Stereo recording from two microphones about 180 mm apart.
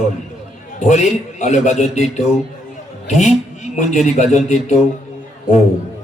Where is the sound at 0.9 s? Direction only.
40° left (ahead or behind).